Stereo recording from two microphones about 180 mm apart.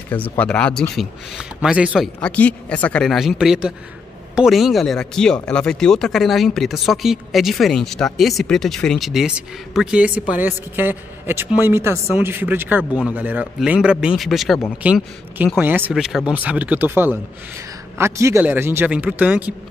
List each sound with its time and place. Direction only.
0.1 s speech: 10° left (ahead or behind)
2.1 s speech: 10° left (ahead or behind); by 19.5 s 10° right (ahead or behind)